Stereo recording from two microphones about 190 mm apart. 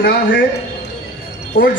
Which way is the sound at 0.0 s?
55° left (ahead or behind).